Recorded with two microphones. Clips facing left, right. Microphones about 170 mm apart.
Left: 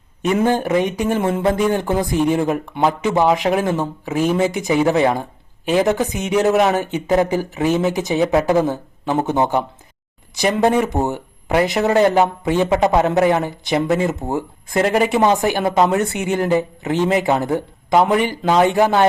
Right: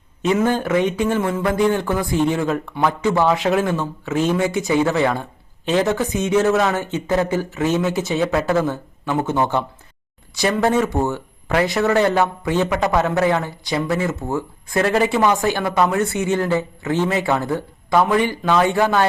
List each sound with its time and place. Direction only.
0.4 s speech: 20° left (ahead or behind)